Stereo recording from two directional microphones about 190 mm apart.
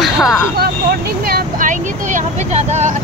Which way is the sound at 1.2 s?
45° right (ahead or behind).